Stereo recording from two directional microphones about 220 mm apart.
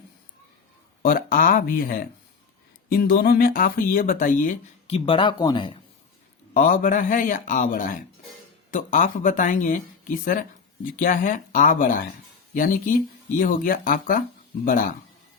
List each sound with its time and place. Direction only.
1.0 s speech: 40° left (ahead or behind); by 5.7 s 20° left (ahead or behind)
6.5 s speech: 40° left (ahead or behind)